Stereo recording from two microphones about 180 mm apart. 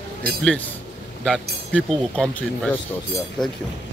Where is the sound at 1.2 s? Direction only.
5° left (ahead or behind).